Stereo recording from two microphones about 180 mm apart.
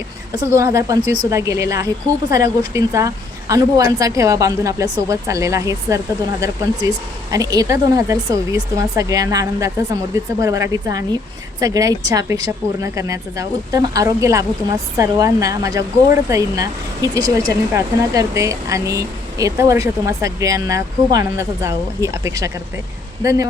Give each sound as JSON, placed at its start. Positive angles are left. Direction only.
{"t": 0.3, "sound": "speech", "side_deg": -15}